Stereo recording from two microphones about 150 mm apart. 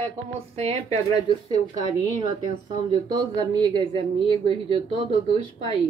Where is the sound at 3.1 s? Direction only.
30° right (ahead or behind).